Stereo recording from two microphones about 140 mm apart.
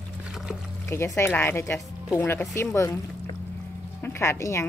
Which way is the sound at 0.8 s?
20° left (ahead or behind).